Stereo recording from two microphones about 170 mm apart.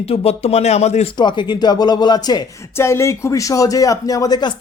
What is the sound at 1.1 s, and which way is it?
Speech, 25° left (ahead or behind).